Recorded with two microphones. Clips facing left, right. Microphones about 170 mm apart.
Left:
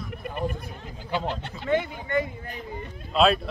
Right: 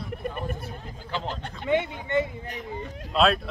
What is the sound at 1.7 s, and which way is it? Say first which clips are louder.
Speech: even; 20° right (ahead or behind).